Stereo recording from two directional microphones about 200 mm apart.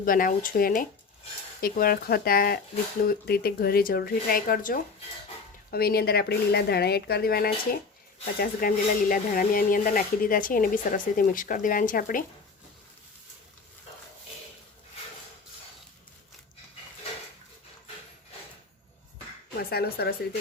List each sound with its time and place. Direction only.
0.0 s speech: 45° left (ahead or behind)
19.7 s speech: 50° left (ahead or behind)